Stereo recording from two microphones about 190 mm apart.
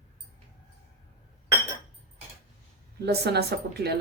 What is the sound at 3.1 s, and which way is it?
Speech, 60° right (ahead or behind).